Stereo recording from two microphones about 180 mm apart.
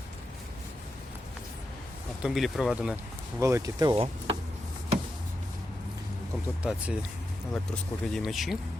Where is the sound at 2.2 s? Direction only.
Centre (ahead or behind).